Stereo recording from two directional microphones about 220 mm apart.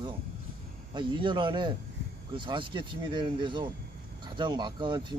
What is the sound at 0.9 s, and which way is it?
Speech, 20° right (ahead or behind).